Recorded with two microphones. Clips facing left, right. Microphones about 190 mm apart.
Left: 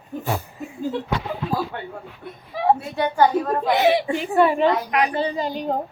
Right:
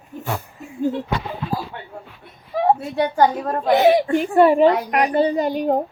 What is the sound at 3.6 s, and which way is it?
A woman's voice, 50° right (ahead or behind).